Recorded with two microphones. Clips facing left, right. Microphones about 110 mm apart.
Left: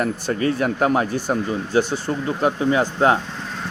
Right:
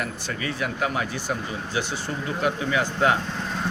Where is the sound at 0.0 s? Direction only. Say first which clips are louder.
Left 9 dB; 40° left (ahead or behind).